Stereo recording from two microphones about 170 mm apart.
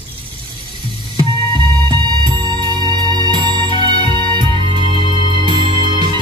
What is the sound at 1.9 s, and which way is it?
Music, 25° right (ahead or behind).